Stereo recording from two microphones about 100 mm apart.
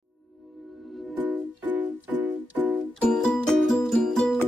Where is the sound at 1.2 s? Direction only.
15° right (ahead or behind).